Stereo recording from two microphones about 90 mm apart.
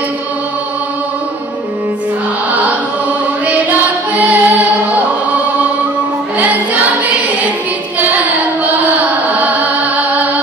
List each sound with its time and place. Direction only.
3.4 s music: 15° right (ahead or behind)